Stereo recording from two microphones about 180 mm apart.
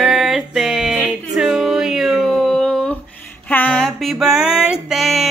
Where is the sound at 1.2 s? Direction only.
Centre (ahead or behind).